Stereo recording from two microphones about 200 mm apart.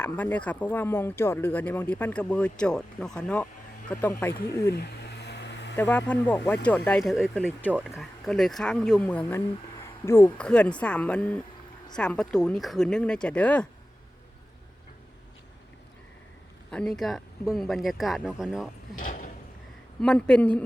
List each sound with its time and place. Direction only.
0.0 s speech: 10° left (ahead or behind)
4.7 s a sound: 55° left (ahead or behind)
5.7 s speech: 10° left (ahead or behind)
16.7 s speech: 5° left (ahead or behind)
18.9 s a sound: 40° left (ahead or behind)
20.0 s speech: 5° left (ahead or behind)